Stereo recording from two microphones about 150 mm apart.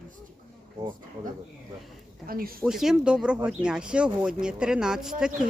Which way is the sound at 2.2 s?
75° right (ahead or behind).